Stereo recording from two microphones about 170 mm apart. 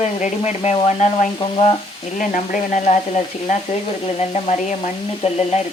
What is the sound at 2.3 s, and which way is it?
Stir, 45° left (ahead or behind).